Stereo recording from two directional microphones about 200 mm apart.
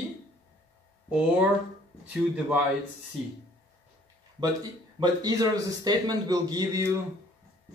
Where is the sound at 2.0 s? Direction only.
5° right (ahead or behind).